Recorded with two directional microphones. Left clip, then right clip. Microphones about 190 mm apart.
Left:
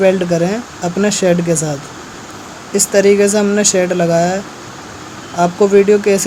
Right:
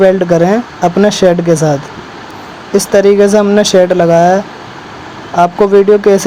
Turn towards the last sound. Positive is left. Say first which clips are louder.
# right 4 dB
turn(degrees=-15)  # may be behind; listen again after turning